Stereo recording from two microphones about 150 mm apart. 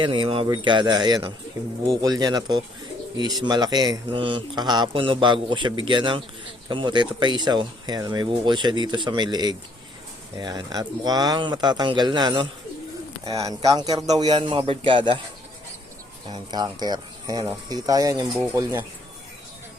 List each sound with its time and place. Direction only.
0.0 s a man's voice: 35° right (ahead or behind)
16.3 s speech: 30° right (ahead or behind)